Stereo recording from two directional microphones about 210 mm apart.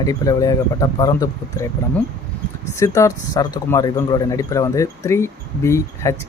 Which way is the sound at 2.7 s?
15° left (ahead or behind).